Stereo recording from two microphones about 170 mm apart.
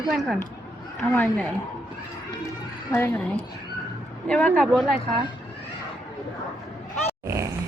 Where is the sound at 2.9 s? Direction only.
15° left (ahead or behind).